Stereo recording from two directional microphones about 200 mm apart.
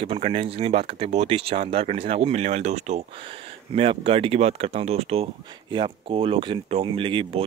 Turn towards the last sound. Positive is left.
turn(degrees=-25)  # may be behind; listen again after turning